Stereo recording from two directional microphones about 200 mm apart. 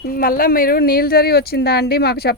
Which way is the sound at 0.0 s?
45° left (ahead or behind).